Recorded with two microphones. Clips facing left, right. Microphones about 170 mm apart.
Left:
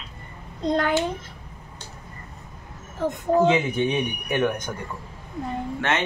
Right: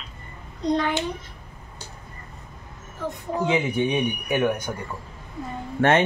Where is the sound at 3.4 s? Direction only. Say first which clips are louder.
Left 2 dB; 15° right (ahead or behind).